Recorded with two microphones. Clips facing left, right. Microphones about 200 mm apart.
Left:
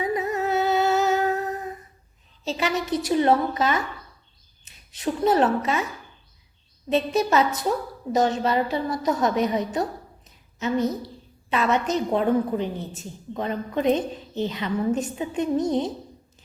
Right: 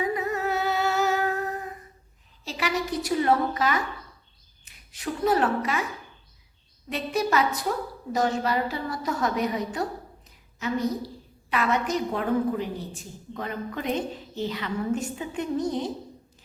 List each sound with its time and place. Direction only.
0.0 s humming: 20° left (ahead or behind)
2.4 s a woman's voice: 25° left (ahead or behind)
6.9 s a woman's voice: 25° left (ahead or behind)
10.2 s a sound: 20° left (ahead or behind)
11.4 s a woman's voice: 25° left (ahead or behind)